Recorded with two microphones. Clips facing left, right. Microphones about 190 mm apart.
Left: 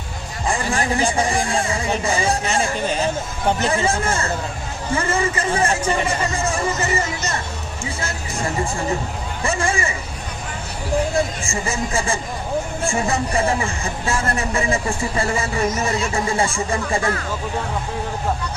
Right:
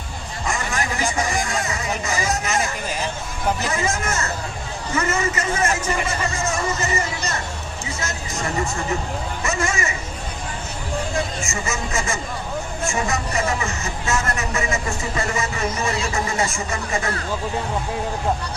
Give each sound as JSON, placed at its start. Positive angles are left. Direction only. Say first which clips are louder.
{"t": 0.4, "sound": "speech", "louder": "left 4 dB", "side_deg": 30}
{"t": 9.4, "sound": "speech", "louder": "left 3 dB", "side_deg": 30}
{"t": 11.4, "sound": "speech", "louder": "left 3 dB", "side_deg": 30}